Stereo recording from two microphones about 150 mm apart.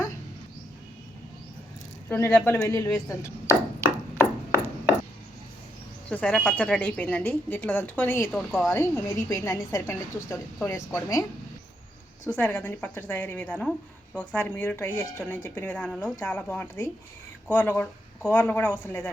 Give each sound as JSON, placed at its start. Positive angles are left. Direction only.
{"t": 2.0, "sound": "a woman's voice", "side_deg": 15}
{"t": 3.9, "sound": "a sound", "side_deg": 20}
{"t": 6.1, "sound": "a woman's voice", "side_deg": 5}